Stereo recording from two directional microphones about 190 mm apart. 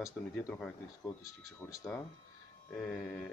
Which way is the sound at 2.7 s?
5° left (ahead or behind).